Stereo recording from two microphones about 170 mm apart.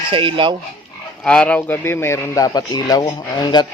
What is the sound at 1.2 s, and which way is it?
A man's voice, 5° left (ahead or behind).